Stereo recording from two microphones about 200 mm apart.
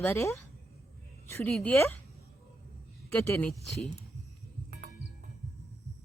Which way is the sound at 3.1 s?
10° left (ahead or behind).